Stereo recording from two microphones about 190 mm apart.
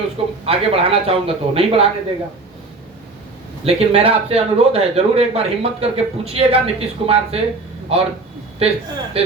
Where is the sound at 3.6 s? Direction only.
30° right (ahead or behind).